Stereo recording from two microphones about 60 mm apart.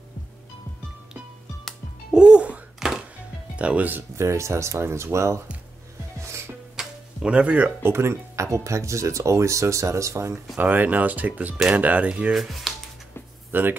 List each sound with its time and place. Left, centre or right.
2.1 s music: centre
2.8 s music: centre
3.5 s speech: right
4.2 s speech: right
6.1 s music: right
6.8 s music: centre
7.8 s speech: right
10.6 s speech: right
12.4 s speech: centre
13.5 s speech: right